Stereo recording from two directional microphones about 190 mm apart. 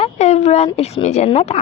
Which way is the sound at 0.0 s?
35° left (ahead or behind).